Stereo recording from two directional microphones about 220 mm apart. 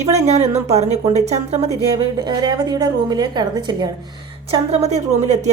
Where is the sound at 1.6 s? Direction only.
15° right (ahead or behind).